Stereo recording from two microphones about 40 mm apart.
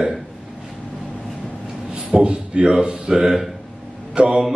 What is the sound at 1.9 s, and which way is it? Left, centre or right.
A man's voice, right.